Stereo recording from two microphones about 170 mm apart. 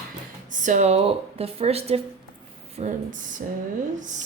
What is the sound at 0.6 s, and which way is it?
A woman's voice, 45° right (ahead or behind).